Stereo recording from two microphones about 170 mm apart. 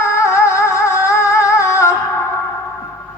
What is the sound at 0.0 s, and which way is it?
Music, 15° left (ahead or behind).